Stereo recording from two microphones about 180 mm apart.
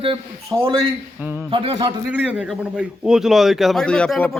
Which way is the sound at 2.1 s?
5° right (ahead or behind).